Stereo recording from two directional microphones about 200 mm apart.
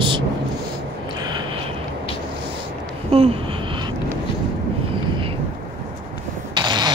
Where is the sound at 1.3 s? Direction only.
25° right (ahead or behind).